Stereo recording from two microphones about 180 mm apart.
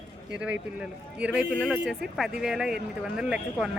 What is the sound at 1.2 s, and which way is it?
Speech, 5° right (ahead or behind).